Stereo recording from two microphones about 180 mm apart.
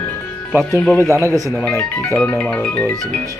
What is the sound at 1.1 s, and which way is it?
Speech, 15° right (ahead or behind).